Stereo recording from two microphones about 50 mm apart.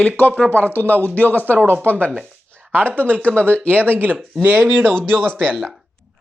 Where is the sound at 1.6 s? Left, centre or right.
Right.